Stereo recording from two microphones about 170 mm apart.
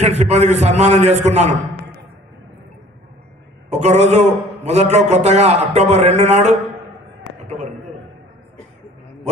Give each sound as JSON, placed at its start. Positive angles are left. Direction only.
{"t": 0.0, "sound": "a man's voice", "side_deg": -40}
{"t": 3.7, "sound": "a man's voice", "side_deg": -40}